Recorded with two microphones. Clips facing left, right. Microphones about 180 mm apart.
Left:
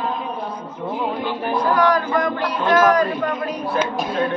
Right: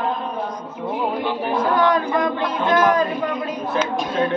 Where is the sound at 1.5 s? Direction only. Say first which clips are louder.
Left 1 dB; 25° right (ahead or behind).